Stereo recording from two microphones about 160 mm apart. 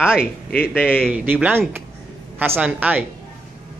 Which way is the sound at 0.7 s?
10° left (ahead or behind).